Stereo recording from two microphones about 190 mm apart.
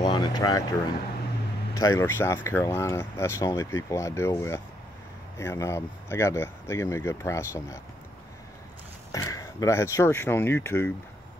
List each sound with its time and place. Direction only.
0.0 s a sound: 20° left (ahead or behind)
1.8 s speech: 15° left (ahead or behind)
9.1 s speech: 15° left (ahead or behind)